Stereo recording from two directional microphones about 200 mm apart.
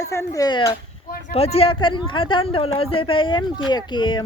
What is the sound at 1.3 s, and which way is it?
Speech, 30° left (ahead or behind).